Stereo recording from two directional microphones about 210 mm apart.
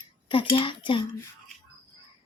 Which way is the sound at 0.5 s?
25° left (ahead or behind).